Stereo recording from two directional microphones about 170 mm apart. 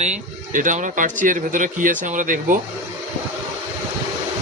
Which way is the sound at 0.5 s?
50° right (ahead or behind).